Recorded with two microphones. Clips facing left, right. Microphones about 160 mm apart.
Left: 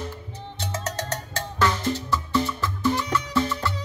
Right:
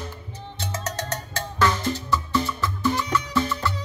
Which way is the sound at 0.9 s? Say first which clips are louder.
Even; 30° left (ahead or behind).